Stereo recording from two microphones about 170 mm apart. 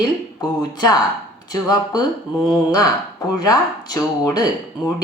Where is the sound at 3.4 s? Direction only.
25° left (ahead or behind).